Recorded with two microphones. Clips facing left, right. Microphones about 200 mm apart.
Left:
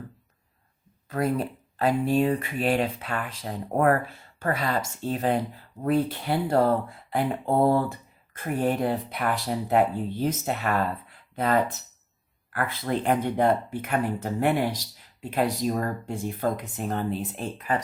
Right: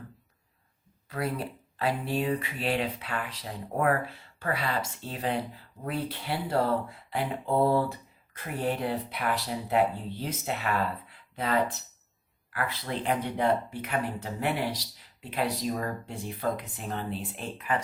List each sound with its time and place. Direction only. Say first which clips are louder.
1.1 s speech: left 6 dB; 45° left (ahead or behind)